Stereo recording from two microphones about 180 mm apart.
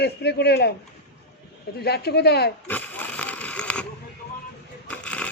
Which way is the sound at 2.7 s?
10° left (ahead or behind).